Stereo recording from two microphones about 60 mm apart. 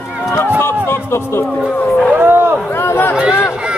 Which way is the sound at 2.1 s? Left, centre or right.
Right.